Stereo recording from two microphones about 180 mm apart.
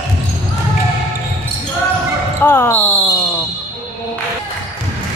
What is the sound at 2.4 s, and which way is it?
Basketball bounce, 10° left (ahead or behind).